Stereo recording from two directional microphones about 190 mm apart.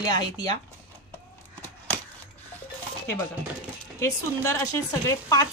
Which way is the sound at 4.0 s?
15° left (ahead or behind).